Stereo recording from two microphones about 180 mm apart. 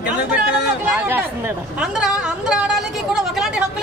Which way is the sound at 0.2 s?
70° left (ahead or behind).